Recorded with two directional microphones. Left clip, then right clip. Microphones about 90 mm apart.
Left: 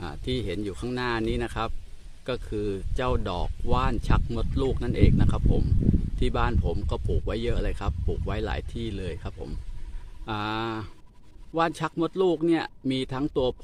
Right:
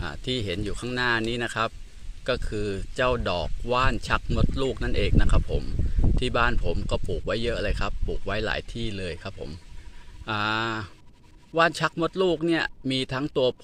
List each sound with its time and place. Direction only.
0.0 s speech: 25° left (ahead or behind)